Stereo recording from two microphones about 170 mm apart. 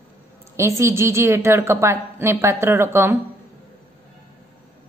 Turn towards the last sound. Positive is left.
turn(degrees=-15)  # may be behind; listen again after turning